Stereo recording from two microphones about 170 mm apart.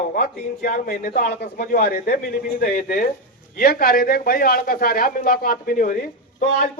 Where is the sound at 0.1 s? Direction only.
55° left (ahead or behind).